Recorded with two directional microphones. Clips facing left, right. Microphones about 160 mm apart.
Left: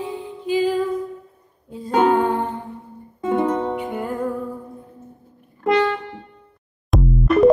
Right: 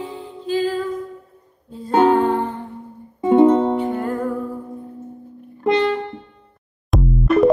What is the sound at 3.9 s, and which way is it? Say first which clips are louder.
Music: right 3 dB; 10° left (ahead or behind).